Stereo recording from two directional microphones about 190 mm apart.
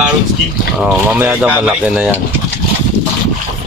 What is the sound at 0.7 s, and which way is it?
Speech, 5° right (ahead or behind).